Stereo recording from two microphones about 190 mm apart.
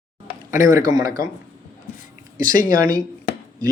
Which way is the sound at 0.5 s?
15° right (ahead or behind).